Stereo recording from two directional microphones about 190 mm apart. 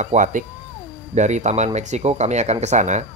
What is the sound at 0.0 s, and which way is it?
Speech, 40° right (ahead or behind).